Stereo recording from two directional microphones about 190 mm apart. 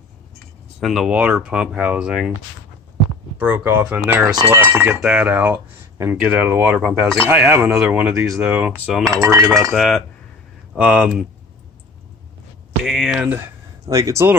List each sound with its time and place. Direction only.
0.7 s speech: centre (ahead or behind)
3.3 s speech: 10° right (ahead or behind)
9.1 s speech: 20° right (ahead or behind)
9.7 s speech: centre (ahead or behind)
12.8 s speech: centre (ahead or behind)
13.8 s speech: 15° right (ahead or behind)